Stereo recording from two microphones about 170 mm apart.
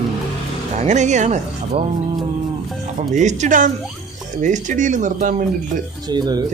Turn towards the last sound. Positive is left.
turn(degrees=-25)  # may be behind; listen again after turning